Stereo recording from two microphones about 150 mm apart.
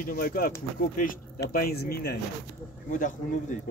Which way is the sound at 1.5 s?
85° left.